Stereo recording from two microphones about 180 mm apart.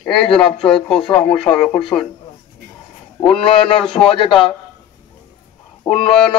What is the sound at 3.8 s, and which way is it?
Speech, centre (ahead or behind).